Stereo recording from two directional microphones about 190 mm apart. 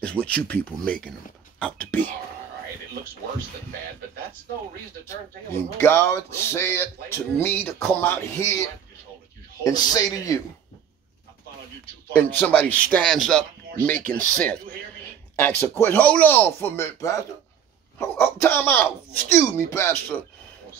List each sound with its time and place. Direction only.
0.0 s speech: 5° left (ahead or behind)
5.0 s a man's voice: 10° left (ahead or behind)
12.1 s speech: 10° left (ahead or behind)